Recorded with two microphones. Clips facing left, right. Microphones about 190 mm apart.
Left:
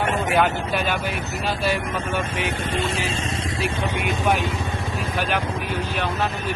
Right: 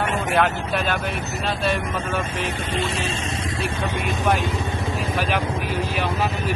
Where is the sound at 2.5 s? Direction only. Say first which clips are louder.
Left 1 dB; 50° left (ahead or behind).